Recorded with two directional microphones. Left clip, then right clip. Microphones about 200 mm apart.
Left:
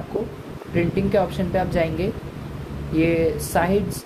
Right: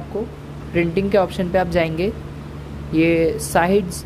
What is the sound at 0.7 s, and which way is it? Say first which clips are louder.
Speech: right 3 dB; 30° right (ahead or behind).